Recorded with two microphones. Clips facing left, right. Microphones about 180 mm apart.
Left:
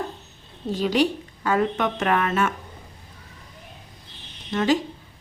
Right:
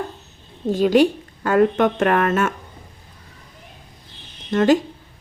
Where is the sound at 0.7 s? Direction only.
50° right (ahead or behind).